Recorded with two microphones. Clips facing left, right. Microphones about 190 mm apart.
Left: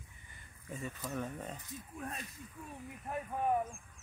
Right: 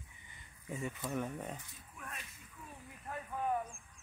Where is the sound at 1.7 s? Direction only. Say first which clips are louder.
Left 7 dB; 40° left (ahead or behind).